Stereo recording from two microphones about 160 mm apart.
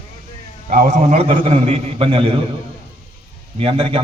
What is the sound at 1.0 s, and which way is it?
Speech, 50° right (ahead or behind).